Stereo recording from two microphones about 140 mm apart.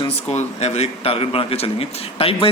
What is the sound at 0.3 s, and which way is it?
Speech, 50° left (ahead or behind).